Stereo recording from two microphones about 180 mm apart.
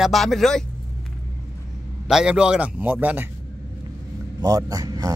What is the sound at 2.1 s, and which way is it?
Speech, 5° right (ahead or behind).